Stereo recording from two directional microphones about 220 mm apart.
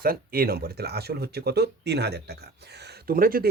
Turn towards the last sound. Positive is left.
turn(degrees=-40)  # may be behind; listen again after turning